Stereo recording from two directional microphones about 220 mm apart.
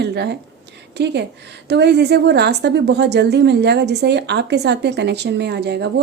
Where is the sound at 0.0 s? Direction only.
50° right (ahead or behind).